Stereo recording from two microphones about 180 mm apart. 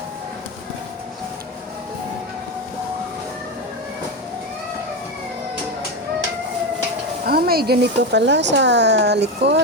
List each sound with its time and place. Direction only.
7.3 s speech: 55° right (ahead or behind)